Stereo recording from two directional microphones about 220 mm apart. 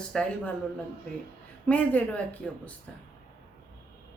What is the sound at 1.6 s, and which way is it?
Speech, 5° left (ahead or behind).